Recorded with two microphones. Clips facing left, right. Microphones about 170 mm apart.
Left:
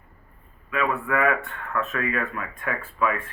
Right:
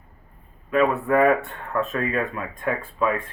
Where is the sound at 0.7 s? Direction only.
30° right (ahead or behind).